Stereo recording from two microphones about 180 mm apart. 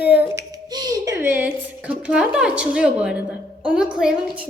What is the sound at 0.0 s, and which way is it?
Speech, 10° right (ahead or behind).